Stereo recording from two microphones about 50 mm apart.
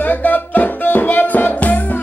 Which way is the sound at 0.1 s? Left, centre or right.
Left.